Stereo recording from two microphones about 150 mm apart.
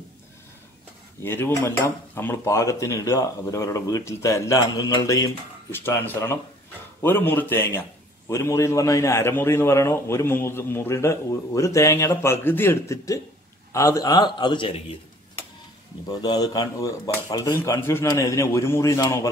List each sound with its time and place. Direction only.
1.2 s a man's voice: 15° left (ahead or behind); by 15.0 s 35° left (ahead or behind)
16.1 s speech: 25° left (ahead or behind)